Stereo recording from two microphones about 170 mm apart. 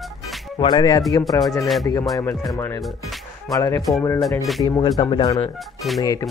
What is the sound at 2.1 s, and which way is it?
Speech, 20° left (ahead or behind).